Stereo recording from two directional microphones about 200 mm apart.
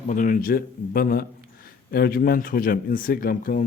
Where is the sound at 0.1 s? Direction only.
40° left (ahead or behind).